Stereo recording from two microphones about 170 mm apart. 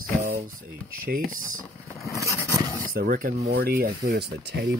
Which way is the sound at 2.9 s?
55° right (ahead or behind).